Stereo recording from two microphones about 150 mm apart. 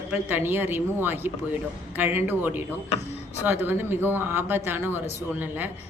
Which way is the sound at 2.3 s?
15° right (ahead or behind).